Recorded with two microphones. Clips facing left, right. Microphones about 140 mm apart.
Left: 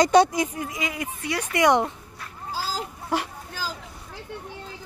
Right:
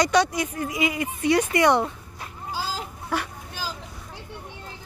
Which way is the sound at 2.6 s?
30° left (ahead or behind).